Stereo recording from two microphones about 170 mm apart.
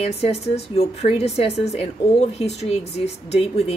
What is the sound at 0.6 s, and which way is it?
Speech, 40° left (ahead or behind).